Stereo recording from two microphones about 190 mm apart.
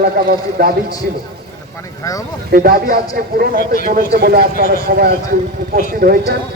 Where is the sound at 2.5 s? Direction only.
50° right (ahead or behind).